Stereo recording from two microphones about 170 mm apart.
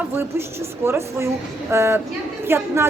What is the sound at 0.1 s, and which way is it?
A man's voice, 15° right (ahead or behind).